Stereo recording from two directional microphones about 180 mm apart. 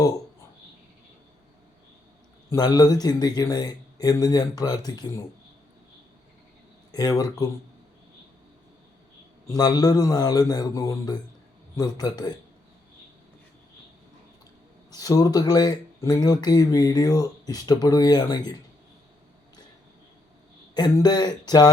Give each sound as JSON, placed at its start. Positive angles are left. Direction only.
{"t": 2.5, "sound": "speech", "side_deg": 20}
{"t": 6.9, "sound": "speech", "side_deg": 20}
{"t": 9.6, "sound": "speech", "side_deg": 20}
{"t": 14.9, "sound": "speech", "side_deg": 20}
{"t": 20.7, "sound": "speech", "side_deg": 25}